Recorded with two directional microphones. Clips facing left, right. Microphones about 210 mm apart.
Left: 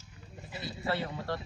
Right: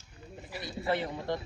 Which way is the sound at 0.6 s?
20° right (ahead or behind).